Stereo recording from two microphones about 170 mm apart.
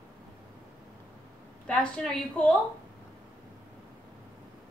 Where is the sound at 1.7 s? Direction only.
5° left (ahead or behind).